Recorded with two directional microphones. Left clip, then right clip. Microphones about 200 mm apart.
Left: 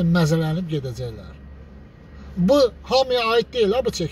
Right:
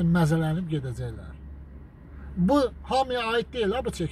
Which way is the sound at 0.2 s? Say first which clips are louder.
Left 4 dB; 5° right (ahead or behind).